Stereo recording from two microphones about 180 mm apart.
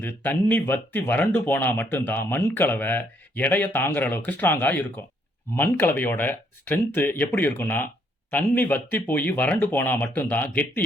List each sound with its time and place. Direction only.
0.0 s speech: 10° left (ahead or behind)